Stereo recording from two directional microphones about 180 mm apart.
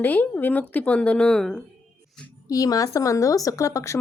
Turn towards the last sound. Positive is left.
turn(degrees=15)  # may be behind; listen again after turning